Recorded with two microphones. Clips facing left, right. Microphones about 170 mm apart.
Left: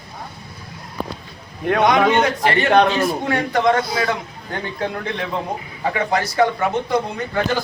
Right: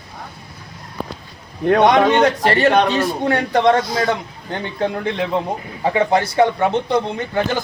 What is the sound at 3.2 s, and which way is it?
Speech, 30° right (ahead or behind).